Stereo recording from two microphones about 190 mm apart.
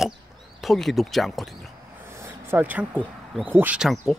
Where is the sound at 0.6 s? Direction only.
Centre (ahead or behind).